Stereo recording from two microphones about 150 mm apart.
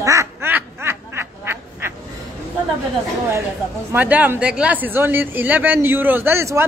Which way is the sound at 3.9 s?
10° right (ahead or behind).